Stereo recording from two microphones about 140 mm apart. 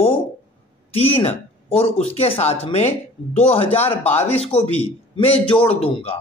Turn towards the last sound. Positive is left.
turn(degrees=40)  # may be behind; listen again after turning